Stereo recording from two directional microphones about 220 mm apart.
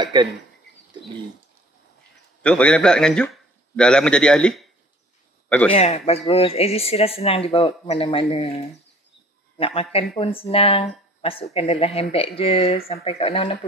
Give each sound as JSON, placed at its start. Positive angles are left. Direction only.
{"t": 0.0, "sound": "speech", "side_deg": -20}
{"t": 2.4, "sound": "a man's voice", "side_deg": 5}
{"t": 5.7, "sound": "speech", "side_deg": 30}
{"t": 9.6, "sound": "a man's voice", "side_deg": 25}